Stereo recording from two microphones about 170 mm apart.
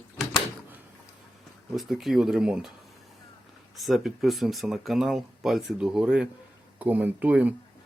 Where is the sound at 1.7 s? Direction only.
Centre (ahead or behind).